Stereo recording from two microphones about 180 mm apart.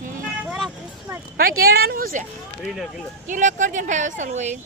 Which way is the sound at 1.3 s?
60° right (ahead or behind).